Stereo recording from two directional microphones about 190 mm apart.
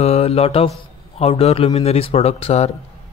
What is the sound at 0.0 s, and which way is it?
Speech, 35° left (ahead or behind).